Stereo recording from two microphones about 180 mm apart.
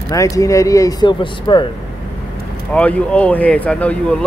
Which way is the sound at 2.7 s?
5° left (ahead or behind).